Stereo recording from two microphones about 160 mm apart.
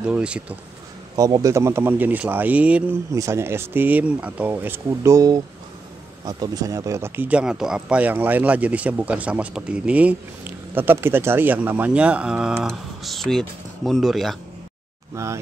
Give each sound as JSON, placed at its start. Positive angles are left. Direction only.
{"t": 0.0, "sound": "speech", "side_deg": -5}
{"t": 1.1, "sound": "speech", "side_deg": -20}
{"t": 15.2, "sound": "speech", "side_deg": -20}